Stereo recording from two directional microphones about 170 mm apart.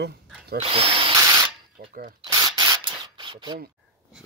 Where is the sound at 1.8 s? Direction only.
65° right (ahead or behind).